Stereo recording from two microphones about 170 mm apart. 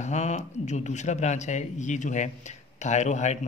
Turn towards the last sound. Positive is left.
turn(degrees=45)  # may be behind; listen again after turning